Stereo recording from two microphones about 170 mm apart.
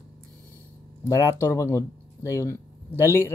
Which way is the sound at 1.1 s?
15° left (ahead or behind).